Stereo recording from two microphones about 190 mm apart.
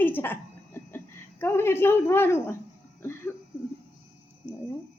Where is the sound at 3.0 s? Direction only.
15° left (ahead or behind).